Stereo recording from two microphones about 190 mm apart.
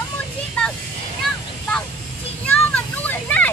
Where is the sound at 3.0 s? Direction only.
10° left (ahead or behind).